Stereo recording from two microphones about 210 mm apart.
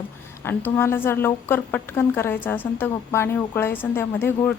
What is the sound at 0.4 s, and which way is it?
Speech, 10° left (ahead or behind).